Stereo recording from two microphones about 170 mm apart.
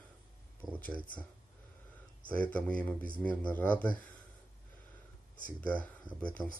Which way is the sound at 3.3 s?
10° left (ahead or behind).